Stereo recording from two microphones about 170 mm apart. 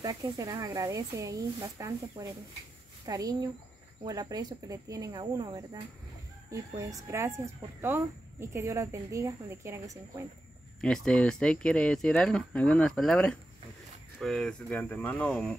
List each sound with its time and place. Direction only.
0.0 s speech: 20° right (ahead or behind)
10.8 s speech: 5° left (ahead or behind)